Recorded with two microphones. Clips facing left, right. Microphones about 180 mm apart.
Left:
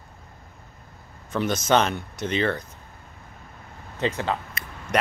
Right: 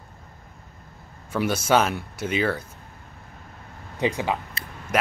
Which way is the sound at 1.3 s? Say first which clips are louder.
Even; 10° right (ahead or behind).